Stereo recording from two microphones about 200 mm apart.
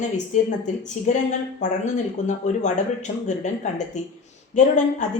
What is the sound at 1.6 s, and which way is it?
Speech, 35° left (ahead or behind).